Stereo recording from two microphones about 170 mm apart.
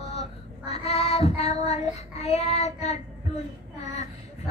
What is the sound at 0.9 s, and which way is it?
Child singing, 35° left (ahead or behind).